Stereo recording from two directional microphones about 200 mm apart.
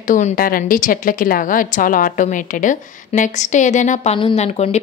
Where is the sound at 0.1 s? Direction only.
45° left (ahead or behind).